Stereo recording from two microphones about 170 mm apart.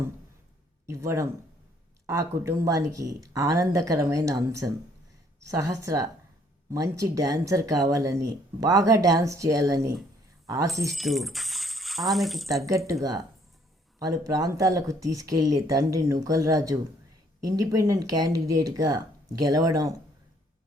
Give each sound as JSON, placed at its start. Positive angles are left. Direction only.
{"t": 0.9, "sound": "speech", "side_deg": -15}
{"t": 10.9, "sound": "speech", "side_deg": 0}
{"t": 12.9, "sound": "speech", "side_deg": -20}